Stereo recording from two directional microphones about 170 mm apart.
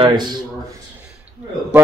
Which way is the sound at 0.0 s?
25° right (ahead or behind).